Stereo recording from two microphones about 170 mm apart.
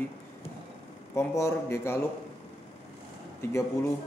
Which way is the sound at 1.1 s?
15° left (ahead or behind).